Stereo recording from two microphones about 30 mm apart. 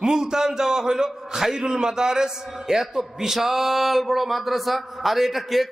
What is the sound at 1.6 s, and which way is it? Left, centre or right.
A man's voice, right.